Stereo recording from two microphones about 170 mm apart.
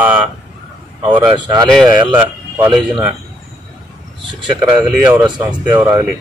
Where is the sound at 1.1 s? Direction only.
30° right (ahead or behind).